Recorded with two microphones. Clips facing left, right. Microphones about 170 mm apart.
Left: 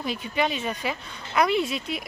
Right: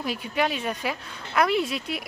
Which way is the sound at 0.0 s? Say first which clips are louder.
Even; 5° right (ahead or behind).